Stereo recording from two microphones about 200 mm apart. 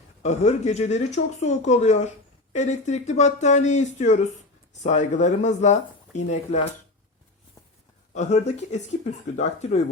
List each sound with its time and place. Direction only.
0.2 s speech: 35° left (ahead or behind)
8.1 s speech: 35° left (ahead or behind)